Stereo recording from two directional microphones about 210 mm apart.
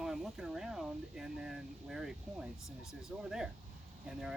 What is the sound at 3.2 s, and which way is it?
Speech, centre (ahead or behind).